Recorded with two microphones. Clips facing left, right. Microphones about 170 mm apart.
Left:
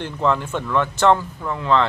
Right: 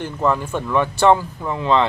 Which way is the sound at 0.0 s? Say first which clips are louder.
Right 1 dB; 10° right (ahead or behind).